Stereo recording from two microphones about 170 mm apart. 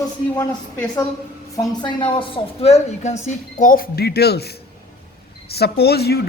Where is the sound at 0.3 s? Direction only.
15° left (ahead or behind).